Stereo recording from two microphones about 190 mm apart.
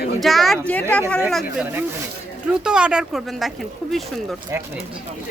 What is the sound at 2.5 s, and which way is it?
Speech, 5° right (ahead or behind).